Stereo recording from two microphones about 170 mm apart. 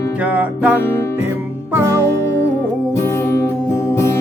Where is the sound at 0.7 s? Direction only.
15° left (ahead or behind).